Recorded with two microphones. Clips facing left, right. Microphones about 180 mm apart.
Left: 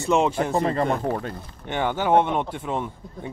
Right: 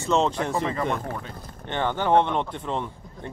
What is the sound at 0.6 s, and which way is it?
Speech, 40° left (ahead or behind).